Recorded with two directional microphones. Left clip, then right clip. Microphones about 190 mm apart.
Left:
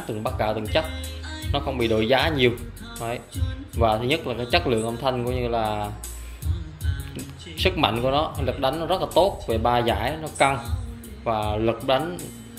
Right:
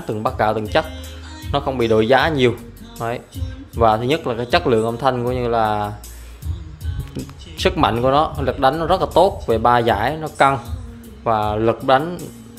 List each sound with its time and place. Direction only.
0.1 s speech: 35° right (ahead or behind)
7.5 s speech: 35° right (ahead or behind)